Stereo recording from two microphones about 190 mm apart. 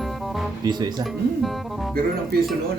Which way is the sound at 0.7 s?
20° right (ahead or behind).